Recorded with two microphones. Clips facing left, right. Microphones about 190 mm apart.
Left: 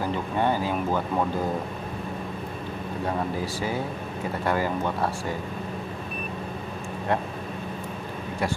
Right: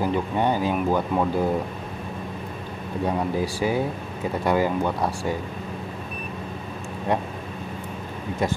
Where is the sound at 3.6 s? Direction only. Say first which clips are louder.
Right 5 dB; 15° right (ahead or behind).